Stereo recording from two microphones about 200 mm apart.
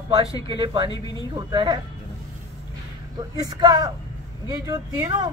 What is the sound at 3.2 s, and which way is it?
Speech, 20° right (ahead or behind).